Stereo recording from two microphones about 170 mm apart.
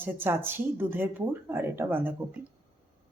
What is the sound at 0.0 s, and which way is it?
Speech, 10° right (ahead or behind).